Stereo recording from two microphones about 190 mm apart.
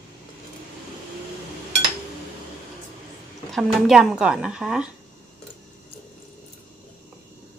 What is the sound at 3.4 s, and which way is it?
Speech, centre (ahead or behind).